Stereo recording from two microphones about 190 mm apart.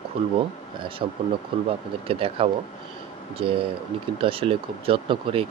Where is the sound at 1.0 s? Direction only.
30° right (ahead or behind).